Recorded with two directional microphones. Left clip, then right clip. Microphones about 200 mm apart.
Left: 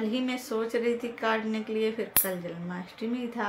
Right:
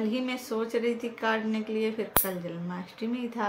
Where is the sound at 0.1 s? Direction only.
5° right (ahead or behind).